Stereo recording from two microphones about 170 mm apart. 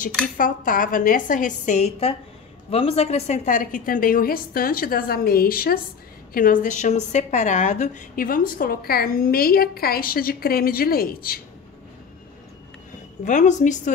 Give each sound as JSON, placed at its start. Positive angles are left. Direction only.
{"t": 0.4, "sound": "a woman's voice", "side_deg": 55}
{"t": 13.2, "sound": "a woman's voice", "side_deg": 45}